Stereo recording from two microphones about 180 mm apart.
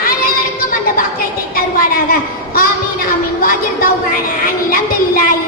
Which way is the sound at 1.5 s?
55° left (ahead or behind).